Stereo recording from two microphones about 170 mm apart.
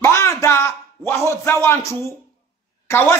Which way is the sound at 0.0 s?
15° left (ahead or behind).